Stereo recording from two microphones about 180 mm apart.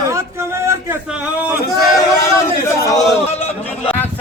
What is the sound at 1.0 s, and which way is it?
Speech, 5° right (ahead or behind).